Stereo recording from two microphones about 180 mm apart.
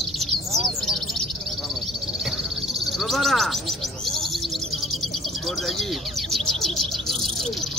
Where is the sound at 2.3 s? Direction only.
Centre (ahead or behind).